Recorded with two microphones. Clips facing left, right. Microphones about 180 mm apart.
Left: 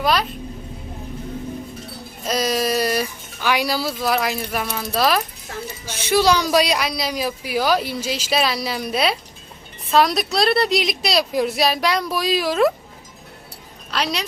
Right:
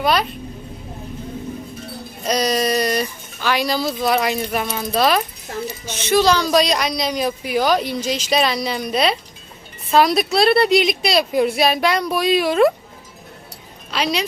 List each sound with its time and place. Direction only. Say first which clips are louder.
0.0 s speech: right 1 dB; centre (ahead or behind)
2.2 s speech: right 2 dB; centre (ahead or behind)
13.9 s speech: right 3 dB; centre (ahead or behind)